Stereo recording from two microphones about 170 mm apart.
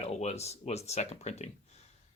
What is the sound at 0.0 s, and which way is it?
Speech, 40° left (ahead or behind).